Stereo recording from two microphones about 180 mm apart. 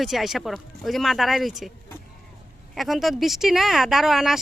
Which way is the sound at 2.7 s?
Centre (ahead or behind).